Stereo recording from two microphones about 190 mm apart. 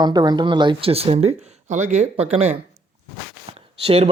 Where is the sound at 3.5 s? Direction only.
30° right (ahead or behind).